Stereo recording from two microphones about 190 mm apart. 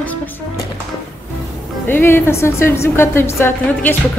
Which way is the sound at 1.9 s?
10° left (ahead or behind).